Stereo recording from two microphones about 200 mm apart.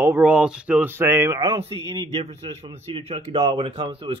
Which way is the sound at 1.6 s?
30° right (ahead or behind).